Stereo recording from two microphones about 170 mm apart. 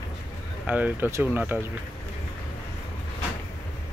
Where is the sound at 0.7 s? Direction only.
10° right (ahead or behind).